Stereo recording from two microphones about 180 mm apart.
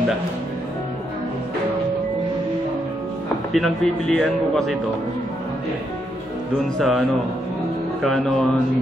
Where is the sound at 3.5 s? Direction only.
Centre (ahead or behind).